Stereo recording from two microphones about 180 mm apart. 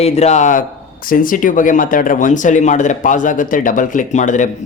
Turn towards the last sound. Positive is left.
turn(degrees=45)  # may be behind; listen again after turning